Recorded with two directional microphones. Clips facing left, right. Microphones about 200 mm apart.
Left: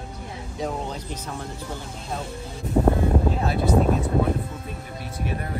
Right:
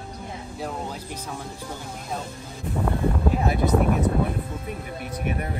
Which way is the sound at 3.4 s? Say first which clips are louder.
Right 2 dB; 20° right (ahead or behind).